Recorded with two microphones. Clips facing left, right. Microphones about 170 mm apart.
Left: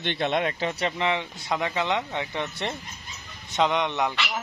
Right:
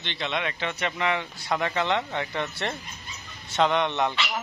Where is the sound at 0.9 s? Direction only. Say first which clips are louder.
Left 1 dB; 20° left (ahead or behind).